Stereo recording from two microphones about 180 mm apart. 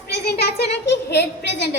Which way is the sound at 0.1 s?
65° left (ahead or behind).